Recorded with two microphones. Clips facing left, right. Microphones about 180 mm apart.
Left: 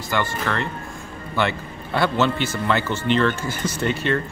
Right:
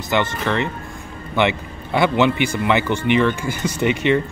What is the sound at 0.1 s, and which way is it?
A man's voice, 20° right (ahead or behind).